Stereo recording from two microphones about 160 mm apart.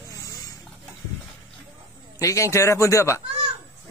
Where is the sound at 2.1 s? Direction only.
20° left (ahead or behind).